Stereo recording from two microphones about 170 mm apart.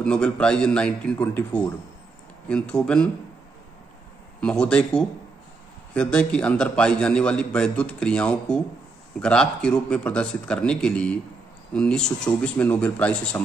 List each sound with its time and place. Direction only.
0.0 s a man's voice: 5° left (ahead or behind)
4.4 s a man's voice: 5° left (ahead or behind)